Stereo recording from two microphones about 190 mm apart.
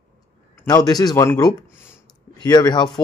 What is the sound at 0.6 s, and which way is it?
Speech, 20° left (ahead or behind).